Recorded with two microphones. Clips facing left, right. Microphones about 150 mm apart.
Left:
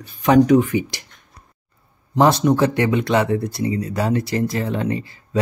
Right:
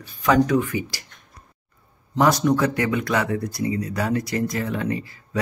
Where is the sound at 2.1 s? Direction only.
25° left (ahead or behind).